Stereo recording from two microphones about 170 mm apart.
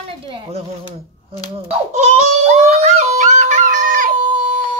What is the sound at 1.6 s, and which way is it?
Baby cry, 40° right (ahead or behind).